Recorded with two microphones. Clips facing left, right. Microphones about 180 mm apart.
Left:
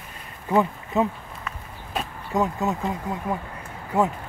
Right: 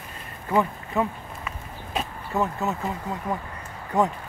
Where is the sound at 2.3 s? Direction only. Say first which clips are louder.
Left 2 dB; 15° left (ahead or behind).